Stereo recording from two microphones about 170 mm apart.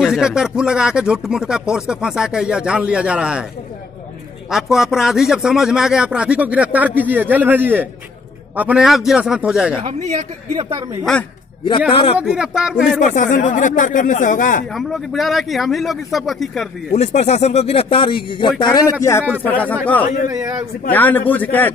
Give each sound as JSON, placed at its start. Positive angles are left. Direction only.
{"t": 0.0, "sound": "speech", "side_deg": -5}
{"t": 4.5, "sound": "speech", "side_deg": 0}
{"t": 10.6, "sound": "a man's voice", "side_deg": -25}
{"t": 12.2, "sound": "speech", "side_deg": -5}
{"t": 13.0, "sound": "speech", "side_deg": 50}
{"t": 14.7, "sound": "speech", "side_deg": 0}
{"t": 16.9, "sound": "speech", "side_deg": 40}
{"t": 20.2, "sound": "a man's voice", "side_deg": -20}
{"t": 20.9, "sound": "speech", "side_deg": 10}